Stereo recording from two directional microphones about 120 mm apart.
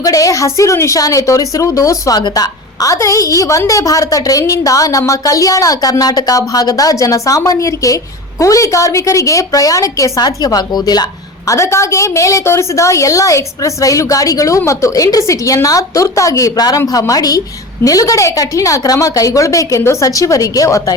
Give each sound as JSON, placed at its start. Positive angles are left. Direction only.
{"t": 0.0, "sound": "a woman's voice", "side_deg": 30}
{"t": 11.4, "sound": "a woman's voice", "side_deg": 25}